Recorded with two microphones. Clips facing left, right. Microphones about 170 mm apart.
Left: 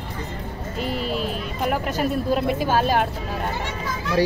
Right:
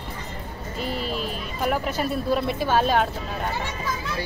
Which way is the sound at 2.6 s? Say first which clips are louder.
Left 1 dB; 10° left (ahead or behind).